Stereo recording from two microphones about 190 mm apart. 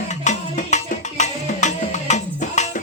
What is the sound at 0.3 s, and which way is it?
Music, 40° left (ahead or behind).